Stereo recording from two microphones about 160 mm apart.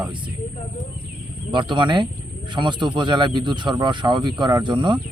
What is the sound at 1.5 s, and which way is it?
Speech, 30° right (ahead or behind).